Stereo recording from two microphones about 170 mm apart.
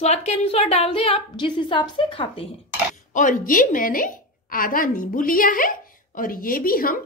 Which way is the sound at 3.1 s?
50° left (ahead or behind).